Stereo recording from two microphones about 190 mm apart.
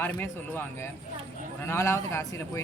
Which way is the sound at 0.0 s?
10° left (ahead or behind).